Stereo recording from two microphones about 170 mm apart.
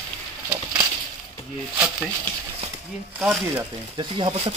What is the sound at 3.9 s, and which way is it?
Speech, 30° right (ahead or behind).